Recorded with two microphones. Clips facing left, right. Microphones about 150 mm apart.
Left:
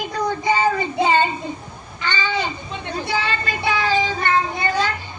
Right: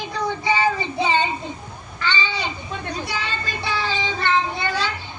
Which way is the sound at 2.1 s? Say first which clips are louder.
Left 1 dB; 45° left (ahead or behind).